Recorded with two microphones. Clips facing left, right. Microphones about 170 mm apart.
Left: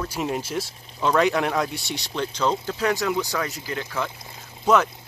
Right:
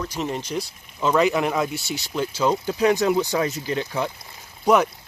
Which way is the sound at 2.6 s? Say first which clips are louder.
Right 5 dB; 20° right (ahead or behind).